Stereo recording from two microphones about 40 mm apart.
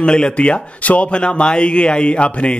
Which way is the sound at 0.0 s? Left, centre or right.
Left.